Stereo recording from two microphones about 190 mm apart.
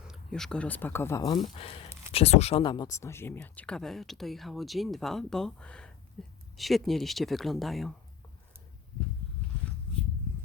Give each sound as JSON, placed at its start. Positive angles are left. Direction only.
{"t": 0.1, "sound": "speech", "side_deg": 0}
{"t": 1.4, "sound": "speech", "side_deg": 30}